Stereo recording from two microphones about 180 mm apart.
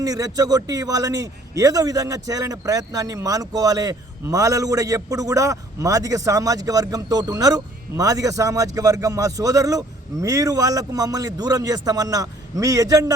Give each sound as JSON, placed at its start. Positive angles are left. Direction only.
{"t": 0.0, "sound": "a man's voice", "side_deg": -20}